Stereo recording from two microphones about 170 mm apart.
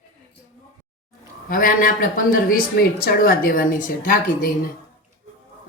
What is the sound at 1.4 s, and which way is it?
A woman's voice, 55° left (ahead or behind).